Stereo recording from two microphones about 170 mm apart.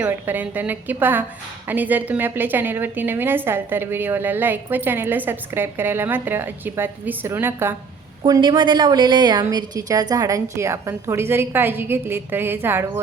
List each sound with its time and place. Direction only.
0.0 s a woman's voice: 10° right (ahead or behind)
8.3 s a woman's voice: 25° right (ahead or behind)